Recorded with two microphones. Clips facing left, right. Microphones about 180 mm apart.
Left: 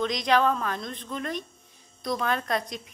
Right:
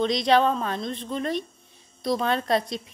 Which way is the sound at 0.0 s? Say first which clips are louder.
Right 3 dB; 30° right (ahead or behind).